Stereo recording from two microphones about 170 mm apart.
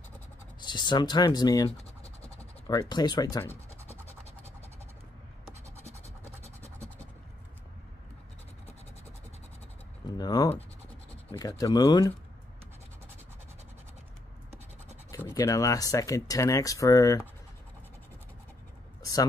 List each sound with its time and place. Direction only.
0.7 s speech: 25° left (ahead or behind)
3.4 s scratch: 10° left (ahead or behind)
10.1 s speech: 20° left (ahead or behind)
15.0 s speech: 20° left (ahead or behind)